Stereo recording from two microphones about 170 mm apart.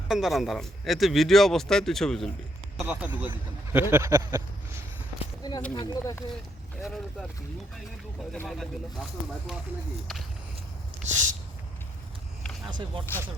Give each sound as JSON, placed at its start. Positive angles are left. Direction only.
{"t": 0.1, "sound": "speech", "side_deg": 0}
{"t": 5.4, "sound": "speech", "side_deg": 25}
{"t": 8.3, "sound": "speech", "side_deg": 0}
{"t": 11.1, "sound": "a sound", "side_deg": -45}
{"t": 12.6, "sound": "speech", "side_deg": -30}